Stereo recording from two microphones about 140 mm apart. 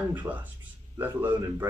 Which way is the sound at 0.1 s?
10° right (ahead or behind).